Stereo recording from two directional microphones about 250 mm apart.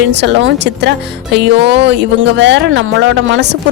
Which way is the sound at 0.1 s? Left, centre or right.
Right.